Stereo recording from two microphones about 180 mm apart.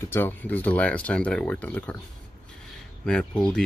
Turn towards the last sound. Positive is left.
turn(degrees=5)  # may be behind; listen again after turning